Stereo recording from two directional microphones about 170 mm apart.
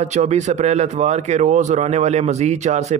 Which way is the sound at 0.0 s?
40° right (ahead or behind).